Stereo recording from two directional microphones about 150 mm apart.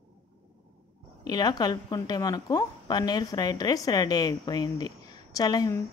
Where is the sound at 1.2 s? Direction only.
25° left (ahead or behind).